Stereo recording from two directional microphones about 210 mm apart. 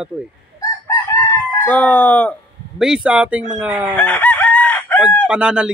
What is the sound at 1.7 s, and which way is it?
Speech, 5° left (ahead or behind).